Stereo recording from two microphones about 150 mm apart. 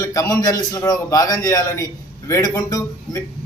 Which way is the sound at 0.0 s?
20° left (ahead or behind).